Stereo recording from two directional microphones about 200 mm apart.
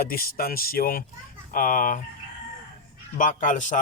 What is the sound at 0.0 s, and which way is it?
Speech, 45° left (ahead or behind).